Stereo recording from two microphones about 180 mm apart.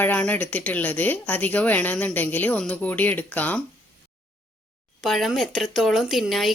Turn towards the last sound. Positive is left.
turn(degrees=0)  # may be behind; listen again after turning